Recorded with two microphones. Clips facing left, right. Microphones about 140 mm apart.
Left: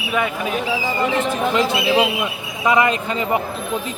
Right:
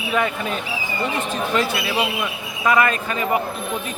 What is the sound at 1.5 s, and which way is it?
A man's voice, 20° left (ahead or behind).